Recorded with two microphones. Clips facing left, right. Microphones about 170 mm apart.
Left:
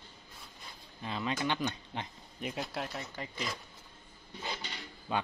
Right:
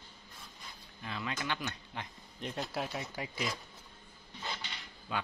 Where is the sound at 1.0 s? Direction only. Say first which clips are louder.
Left 4 dB; 25° left (ahead or behind).